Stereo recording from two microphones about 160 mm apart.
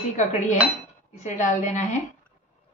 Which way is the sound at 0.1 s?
50° left (ahead or behind).